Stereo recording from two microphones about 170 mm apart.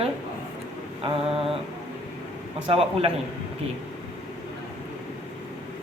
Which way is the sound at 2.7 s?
35° right (ahead or behind).